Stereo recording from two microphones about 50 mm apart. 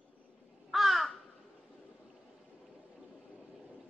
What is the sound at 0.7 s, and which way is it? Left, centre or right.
Crow, centre.